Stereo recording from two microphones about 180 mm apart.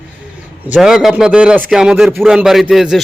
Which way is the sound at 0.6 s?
5° right (ahead or behind).